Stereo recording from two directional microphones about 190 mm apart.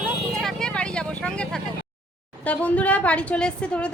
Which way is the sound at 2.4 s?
5° left (ahead or behind).